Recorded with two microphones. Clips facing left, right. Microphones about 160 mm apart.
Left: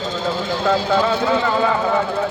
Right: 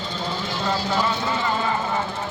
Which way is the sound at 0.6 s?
65° left (ahead or behind).